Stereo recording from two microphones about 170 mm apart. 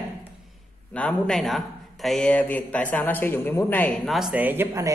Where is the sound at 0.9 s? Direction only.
5° left (ahead or behind).